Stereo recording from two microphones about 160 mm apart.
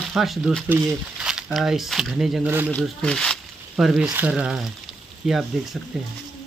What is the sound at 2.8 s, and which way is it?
Speech, 5° left (ahead or behind).